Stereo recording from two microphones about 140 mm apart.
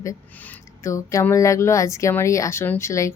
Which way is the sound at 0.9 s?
20° left (ahead or behind).